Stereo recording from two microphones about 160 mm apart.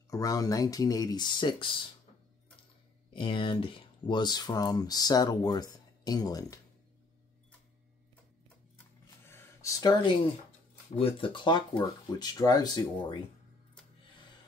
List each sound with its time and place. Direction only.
0.1 s speech: 20° left (ahead or behind)
3.1 s speech: 30° left (ahead or behind)
9.2 s a sound: 15° left (ahead or behind)
11.0 s speech: 35° left (ahead or behind)